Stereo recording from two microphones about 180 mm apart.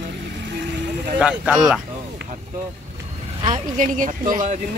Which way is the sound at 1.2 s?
5° right (ahead or behind).